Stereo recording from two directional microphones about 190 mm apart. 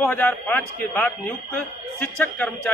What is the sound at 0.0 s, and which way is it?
Speech, 10° left (ahead or behind).